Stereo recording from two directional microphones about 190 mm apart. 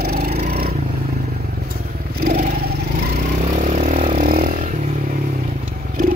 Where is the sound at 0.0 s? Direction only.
55° right (ahead or behind).